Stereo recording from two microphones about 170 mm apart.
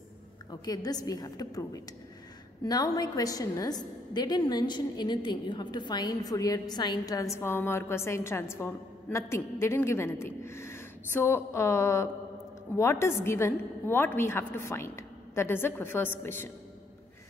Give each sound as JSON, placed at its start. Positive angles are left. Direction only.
{"t": 0.5, "sound": "a woman's voice", "side_deg": 20}